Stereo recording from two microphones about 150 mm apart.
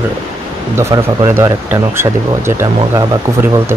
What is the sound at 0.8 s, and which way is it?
Speech, 20° right (ahead or behind).